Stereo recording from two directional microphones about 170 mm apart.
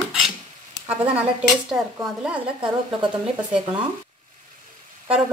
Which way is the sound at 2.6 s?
30° right (ahead or behind).